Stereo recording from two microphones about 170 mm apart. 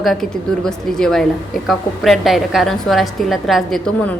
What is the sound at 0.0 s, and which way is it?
A woman's voice, centre (ahead or behind).